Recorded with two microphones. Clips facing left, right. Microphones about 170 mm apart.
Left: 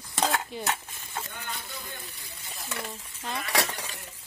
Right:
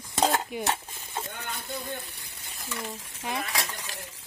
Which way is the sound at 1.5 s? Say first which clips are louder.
Right 5 dB; 60° right (ahead or behind).